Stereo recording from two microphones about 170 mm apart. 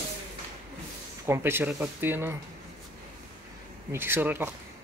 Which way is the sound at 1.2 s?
15° right (ahead or behind).